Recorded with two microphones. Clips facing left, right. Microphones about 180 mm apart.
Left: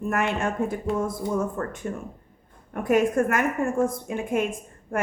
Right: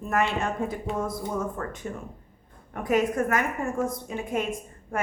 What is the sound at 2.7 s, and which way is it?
A woman's voice, 50° left (ahead or behind).